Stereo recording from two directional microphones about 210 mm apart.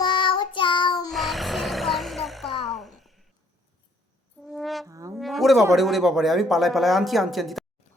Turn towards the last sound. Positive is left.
turn(degrees=0)  # may be behind; listen again after turning